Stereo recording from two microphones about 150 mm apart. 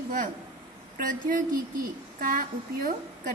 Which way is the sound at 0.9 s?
60° right (ahead or behind).